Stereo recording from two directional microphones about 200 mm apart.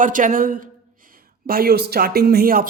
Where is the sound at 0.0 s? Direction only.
40° right (ahead or behind).